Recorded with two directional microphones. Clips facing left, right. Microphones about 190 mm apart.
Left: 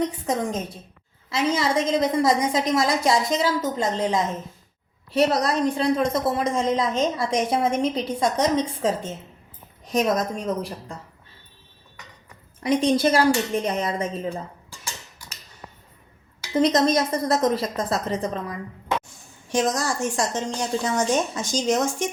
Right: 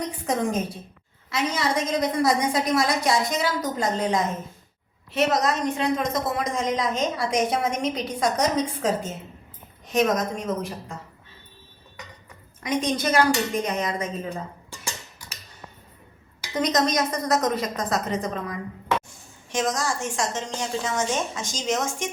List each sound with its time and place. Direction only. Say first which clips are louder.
1.3 s a woman's voice: left 3 dB; 30° left (ahead or behind)
12.5 s a woman's voice: left 5 dB; 30° left (ahead or behind)
16.6 s a woman's voice: left 4 dB; 30° left (ahead or behind)